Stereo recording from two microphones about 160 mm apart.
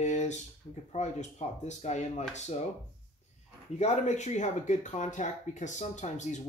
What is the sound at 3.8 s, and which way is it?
Speech, 45° left (ahead or behind).